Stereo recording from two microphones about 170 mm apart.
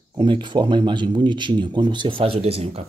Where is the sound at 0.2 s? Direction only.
30° right (ahead or behind).